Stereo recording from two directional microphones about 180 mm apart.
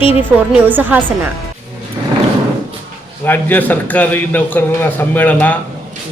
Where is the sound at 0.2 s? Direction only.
10° right (ahead or behind).